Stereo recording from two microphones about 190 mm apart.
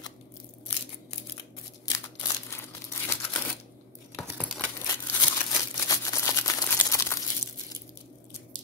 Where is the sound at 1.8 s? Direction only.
15° left (ahead or behind).